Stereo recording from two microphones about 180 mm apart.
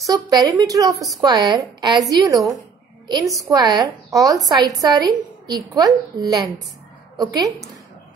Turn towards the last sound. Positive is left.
turn(degrees=-20)  # may be behind; listen again after turning